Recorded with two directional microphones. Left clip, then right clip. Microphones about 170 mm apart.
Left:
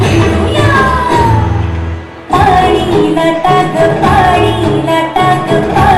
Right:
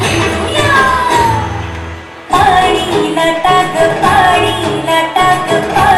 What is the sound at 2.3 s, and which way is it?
Music, 15° left (ahead or behind).